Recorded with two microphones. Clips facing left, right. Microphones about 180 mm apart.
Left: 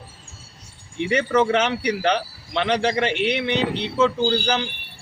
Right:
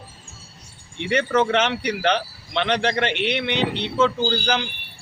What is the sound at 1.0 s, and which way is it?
Speech, 5° left (ahead or behind).